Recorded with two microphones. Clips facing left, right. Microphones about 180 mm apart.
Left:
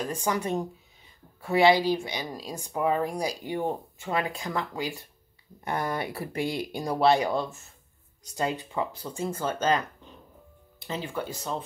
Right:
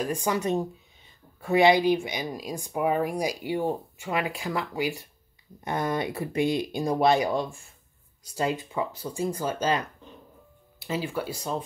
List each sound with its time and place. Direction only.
0.0 s speech: 15° right (ahead or behind)
1.4 s speech: 20° right (ahead or behind)
10.8 s speech: 10° right (ahead or behind)